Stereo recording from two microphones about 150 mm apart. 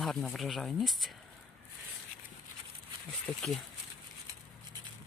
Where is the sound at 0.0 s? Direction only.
5° left (ahead or behind).